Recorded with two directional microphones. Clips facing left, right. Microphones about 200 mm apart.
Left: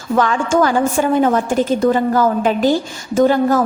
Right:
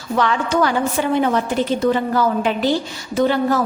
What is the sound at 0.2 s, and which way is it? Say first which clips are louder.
A woman's voice: left 3 dB; 45° left (ahead or behind).